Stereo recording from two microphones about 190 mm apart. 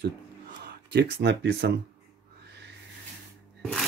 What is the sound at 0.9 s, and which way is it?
Speech, 65° right (ahead or behind).